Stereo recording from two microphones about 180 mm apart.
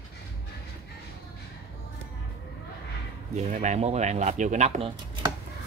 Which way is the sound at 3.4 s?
40° right (ahead or behind).